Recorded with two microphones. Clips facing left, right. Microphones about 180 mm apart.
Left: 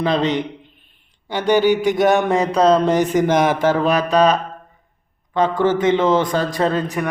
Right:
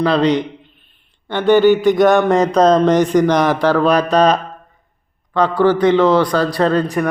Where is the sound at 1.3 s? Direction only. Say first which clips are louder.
Right 4 dB; 10° left (ahead or behind).